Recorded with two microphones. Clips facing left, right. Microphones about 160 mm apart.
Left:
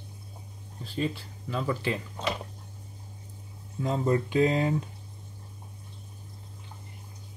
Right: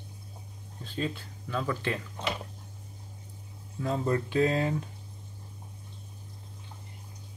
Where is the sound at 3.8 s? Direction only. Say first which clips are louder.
Left 2 dB; 20° left (ahead or behind).